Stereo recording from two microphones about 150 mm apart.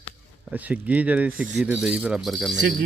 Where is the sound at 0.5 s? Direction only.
10° right (ahead or behind).